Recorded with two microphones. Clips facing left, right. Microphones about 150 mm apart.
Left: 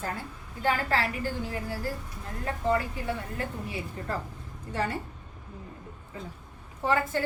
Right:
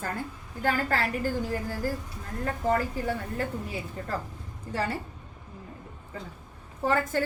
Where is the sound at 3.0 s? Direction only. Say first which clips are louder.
Right 3 dB; 40° right (ahead or behind).